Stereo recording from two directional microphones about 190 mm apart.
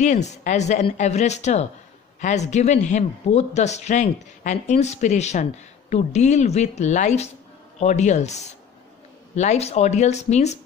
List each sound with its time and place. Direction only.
0.0 s a man's voice: 40° left (ahead or behind)